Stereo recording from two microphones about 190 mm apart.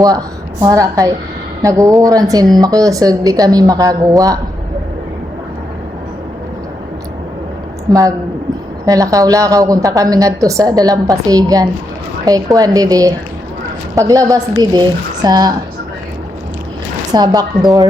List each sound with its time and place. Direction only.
0.0 s a woman's voice: 20° right (ahead or behind)
8.9 s a woman's voice: 15° right (ahead or behind)
17.1 s a woman's voice: 20° right (ahead or behind)